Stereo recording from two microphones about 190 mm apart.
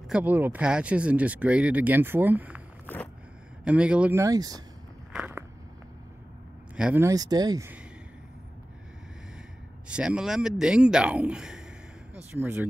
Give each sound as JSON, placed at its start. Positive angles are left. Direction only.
{"t": 0.1, "sound": "speech", "side_deg": -10}
{"t": 3.6, "sound": "speech", "side_deg": -5}
{"t": 5.1, "sound": "biting", "side_deg": -5}
{"t": 6.8, "sound": "speech", "side_deg": -10}
{"t": 9.8, "sound": "speech", "side_deg": -5}